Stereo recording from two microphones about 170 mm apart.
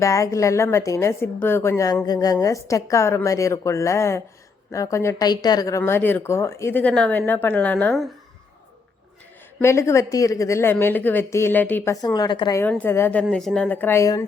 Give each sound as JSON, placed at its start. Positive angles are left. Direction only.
{"t": 0.0, "sound": "a woman's voice", "side_deg": 20}
{"t": 9.6, "sound": "a woman's voice", "side_deg": 15}
{"t": 12.0, "sound": "a woman's voice", "side_deg": 25}
{"t": 12.5, "sound": "a woman's voice", "side_deg": 10}